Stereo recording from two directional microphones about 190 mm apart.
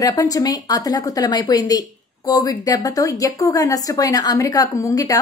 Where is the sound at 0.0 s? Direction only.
20° left (ahead or behind).